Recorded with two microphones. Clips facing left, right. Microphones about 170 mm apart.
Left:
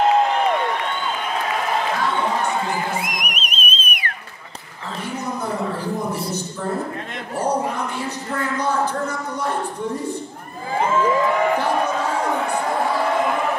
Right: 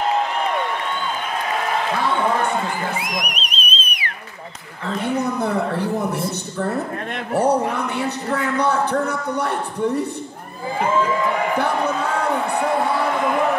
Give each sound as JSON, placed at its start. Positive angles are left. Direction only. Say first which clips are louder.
{"t": 3.0, "sound": "music", "louder": "right 1 dB", "side_deg": 50}
{"t": 5.0, "sound": "a sound", "louder": "right 5 dB", "side_deg": -60}
{"t": 7.3, "sound": "a man's voice", "louder": "right 4 dB", "side_deg": -65}